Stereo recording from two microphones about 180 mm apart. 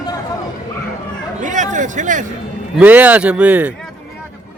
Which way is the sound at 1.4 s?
45° right (ahead or behind).